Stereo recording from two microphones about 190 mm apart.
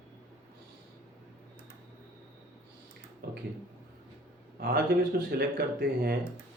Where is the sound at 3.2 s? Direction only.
55° right (ahead or behind).